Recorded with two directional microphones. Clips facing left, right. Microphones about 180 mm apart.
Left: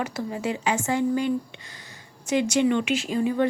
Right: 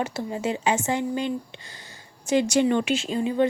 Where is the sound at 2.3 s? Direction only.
35° right (ahead or behind).